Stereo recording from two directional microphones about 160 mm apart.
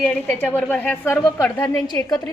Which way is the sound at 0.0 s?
10° left (ahead or behind).